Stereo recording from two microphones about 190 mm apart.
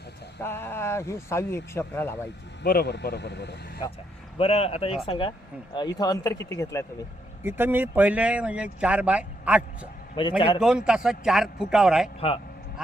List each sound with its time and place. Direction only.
0.4 s speech: 10° left (ahead or behind)
2.6 s speech: 55° left (ahead or behind)
4.4 s speech: 30° left (ahead or behind); by 6.8 s 15° left (ahead or behind)
7.4 s speech: 10° right (ahead or behind)
10.2 s speech: 25° left (ahead or behind)
10.6 s a man's voice: 5° right (ahead or behind)